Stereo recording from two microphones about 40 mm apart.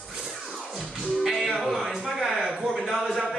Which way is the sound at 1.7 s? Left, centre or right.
Centre.